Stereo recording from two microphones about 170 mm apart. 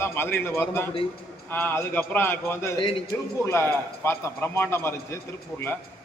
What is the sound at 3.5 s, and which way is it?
A man's voice, 15° left (ahead or behind).